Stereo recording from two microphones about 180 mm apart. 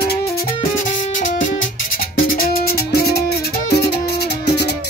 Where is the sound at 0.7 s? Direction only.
45° left (ahead or behind).